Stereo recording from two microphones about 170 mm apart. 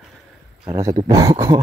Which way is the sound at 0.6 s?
20° right (ahead or behind).